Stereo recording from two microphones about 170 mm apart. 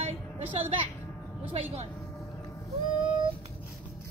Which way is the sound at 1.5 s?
40° right (ahead or behind).